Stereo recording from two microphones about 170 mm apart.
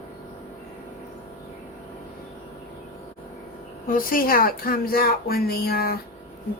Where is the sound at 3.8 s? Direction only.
55° left (ahead or behind).